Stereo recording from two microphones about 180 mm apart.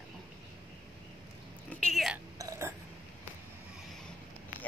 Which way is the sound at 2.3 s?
15° right (ahead or behind).